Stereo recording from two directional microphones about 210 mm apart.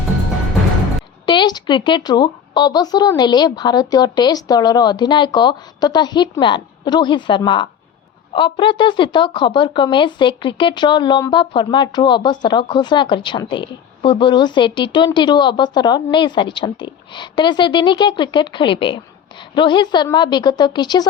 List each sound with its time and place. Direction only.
1.3 s a woman's voice: 20° left (ahead or behind)